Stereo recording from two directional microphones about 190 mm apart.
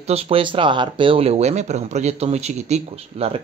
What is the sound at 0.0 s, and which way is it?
Speech, 30° right (ahead or behind).